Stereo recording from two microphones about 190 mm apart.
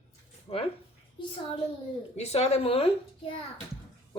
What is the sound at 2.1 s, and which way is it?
Speech, 35° left (ahead or behind).